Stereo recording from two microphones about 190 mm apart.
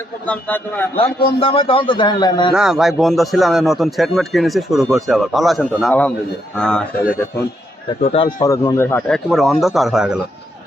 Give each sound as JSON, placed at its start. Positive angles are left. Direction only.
{"t": 0.3, "sound": "speech", "side_deg": 10}
{"t": 1.4, "sound": "a man's voice", "side_deg": 30}
{"t": 2.5, "sound": "speech", "side_deg": -5}
{"t": 8.0, "sound": "a man's voice", "side_deg": 30}
{"t": 8.4, "sound": "speech", "side_deg": 15}